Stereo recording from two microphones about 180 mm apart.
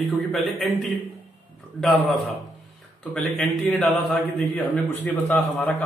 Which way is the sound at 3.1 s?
5° left (ahead or behind).